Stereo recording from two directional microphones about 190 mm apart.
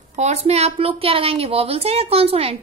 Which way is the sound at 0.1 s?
35° right (ahead or behind).